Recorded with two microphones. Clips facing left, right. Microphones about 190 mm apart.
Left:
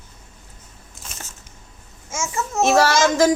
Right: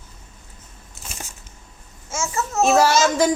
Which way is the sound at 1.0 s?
10° right (ahead or behind).